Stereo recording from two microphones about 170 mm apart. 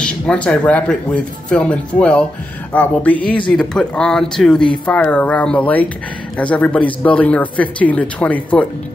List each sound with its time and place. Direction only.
0.0 s speech: 5° left (ahead or behind)